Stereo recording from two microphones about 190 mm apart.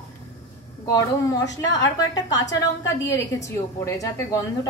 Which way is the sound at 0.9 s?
20° left (ahead or behind).